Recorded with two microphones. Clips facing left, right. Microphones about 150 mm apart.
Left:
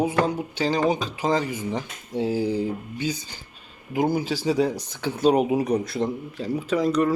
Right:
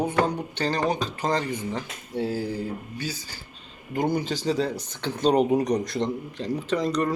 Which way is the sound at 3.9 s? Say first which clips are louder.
Left 2 dB; 5° left (ahead or behind).